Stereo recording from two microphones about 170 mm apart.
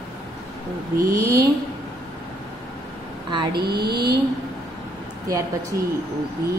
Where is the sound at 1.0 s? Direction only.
20° right (ahead or behind).